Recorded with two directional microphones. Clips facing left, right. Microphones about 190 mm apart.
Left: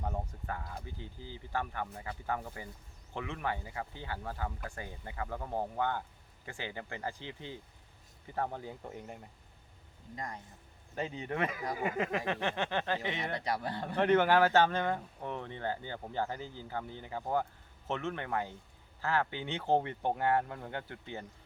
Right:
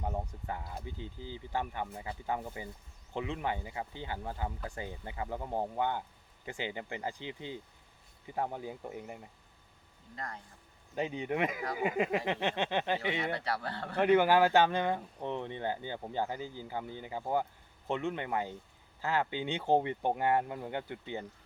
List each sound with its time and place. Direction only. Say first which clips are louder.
0.0 s speech: right 1 dB; 20° right (ahead or behind)
10.2 s speech: left 1 dB; 15° left (ahead or behind)
10.9 s speech: right 3 dB; 15° right (ahead or behind)
13.3 s speech: left 1 dB; 15° left (ahead or behind)
13.9 s speech: right 1 dB; 10° right (ahead or behind)